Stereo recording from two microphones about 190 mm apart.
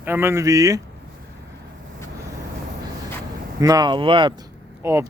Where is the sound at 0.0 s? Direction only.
10° right (ahead or behind).